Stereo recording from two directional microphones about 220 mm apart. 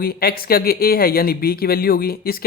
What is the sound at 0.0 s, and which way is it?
Speech, 45° left (ahead or behind).